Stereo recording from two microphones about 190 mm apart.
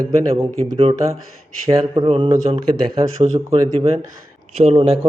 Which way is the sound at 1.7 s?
20° right (ahead or behind).